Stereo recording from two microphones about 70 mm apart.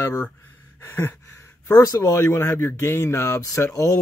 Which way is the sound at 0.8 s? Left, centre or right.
Left.